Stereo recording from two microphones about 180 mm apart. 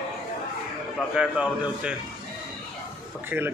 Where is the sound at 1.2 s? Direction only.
5° right (ahead or behind).